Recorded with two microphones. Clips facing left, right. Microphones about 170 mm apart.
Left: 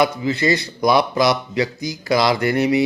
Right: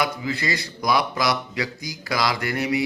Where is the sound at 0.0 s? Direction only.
25° left (ahead or behind).